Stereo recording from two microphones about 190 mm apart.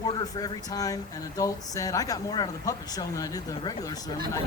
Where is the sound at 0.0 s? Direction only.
20° left (ahead or behind).